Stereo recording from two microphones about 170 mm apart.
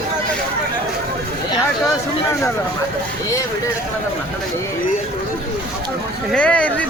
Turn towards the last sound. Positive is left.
turn(degrees=10)  # may be behind; listen again after turning